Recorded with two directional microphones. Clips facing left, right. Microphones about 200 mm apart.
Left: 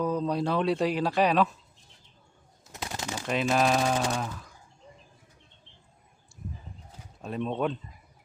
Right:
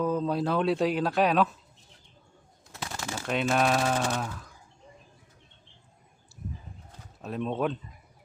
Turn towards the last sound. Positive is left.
turn(degrees=0)  # may be behind; listen again after turning